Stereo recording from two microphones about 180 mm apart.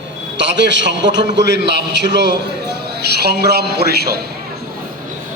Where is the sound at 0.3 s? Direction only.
80° right; by 4.2 s 65° right (ahead or behind).